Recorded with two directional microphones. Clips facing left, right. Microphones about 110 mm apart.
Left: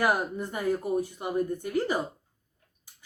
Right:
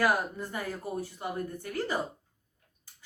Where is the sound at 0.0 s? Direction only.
20° left (ahead or behind).